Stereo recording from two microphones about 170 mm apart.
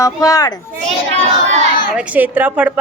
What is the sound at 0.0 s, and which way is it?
Speech, 20° left (ahead or behind).